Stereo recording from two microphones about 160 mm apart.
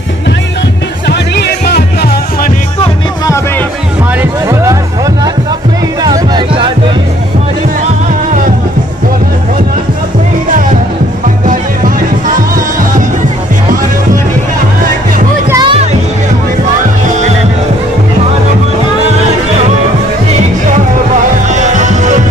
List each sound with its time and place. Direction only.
1.0 s music: 90° left
4.2 s music: 20° right (ahead or behind)
6.0 s music: 25° right (ahead or behind)
12.3 s music: 60° right (ahead or behind)
15.5 s music: 30° right (ahead or behind)
21.5 s music: 50° right (ahead or behind)